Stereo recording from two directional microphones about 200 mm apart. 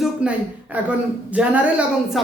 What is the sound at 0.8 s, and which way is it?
A man's voice, 10° right (ahead or behind).